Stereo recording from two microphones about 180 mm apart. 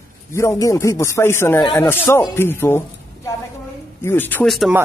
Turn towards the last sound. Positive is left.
turn(degrees=0)  # may be behind; listen again after turning